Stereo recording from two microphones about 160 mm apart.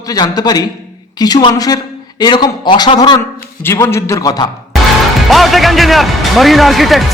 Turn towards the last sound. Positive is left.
turn(degrees=0)  # may be behind; listen again after turning